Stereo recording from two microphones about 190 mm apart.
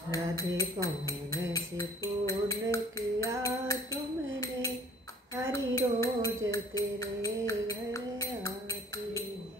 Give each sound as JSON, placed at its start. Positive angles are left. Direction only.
{"t": 0.1, "sound": "music", "side_deg": 15}
{"t": 3.9, "sound": "a sound", "side_deg": 15}
{"t": 5.5, "sound": "music", "side_deg": 15}